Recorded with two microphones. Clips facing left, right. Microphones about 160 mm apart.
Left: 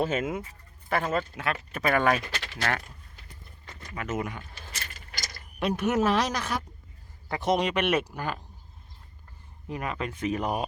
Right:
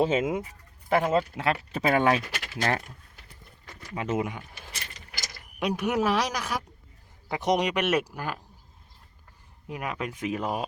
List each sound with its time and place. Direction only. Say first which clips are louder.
0.1 s speech: right 3 dB; 15° right (ahead or behind)
2.1 s speech: right 2 dB; 10° right (ahead or behind)
2.6 s speech: right 3 dB; 25° right (ahead or behind)
3.9 s keys jangling: right 3 dB; 30° right (ahead or behind)
5.3 s speech: even; 10° right (ahead or behind)
9.6 s speech: even; 10° right (ahead or behind)